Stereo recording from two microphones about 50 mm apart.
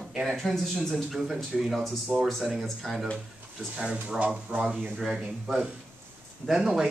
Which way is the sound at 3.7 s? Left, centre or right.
Centre.